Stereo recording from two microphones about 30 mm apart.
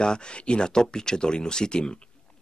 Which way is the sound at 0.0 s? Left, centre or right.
Left.